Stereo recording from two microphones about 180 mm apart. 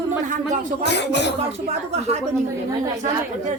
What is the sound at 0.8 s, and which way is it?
Speech, 70° left (ahead or behind).